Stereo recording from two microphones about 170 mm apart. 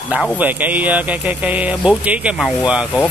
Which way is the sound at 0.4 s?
10° right (ahead or behind).